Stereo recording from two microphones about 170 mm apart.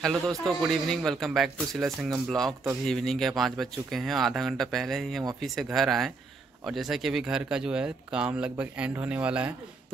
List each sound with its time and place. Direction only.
0.0 s speech: centre (ahead or behind)